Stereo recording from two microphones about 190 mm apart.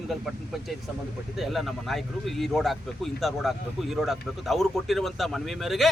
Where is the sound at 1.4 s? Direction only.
Centre (ahead or behind).